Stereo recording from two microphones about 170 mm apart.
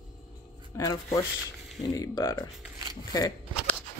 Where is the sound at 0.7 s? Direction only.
15° left (ahead or behind).